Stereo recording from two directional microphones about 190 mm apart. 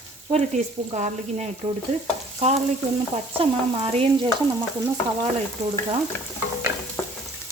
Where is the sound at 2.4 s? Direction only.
35° right (ahead or behind).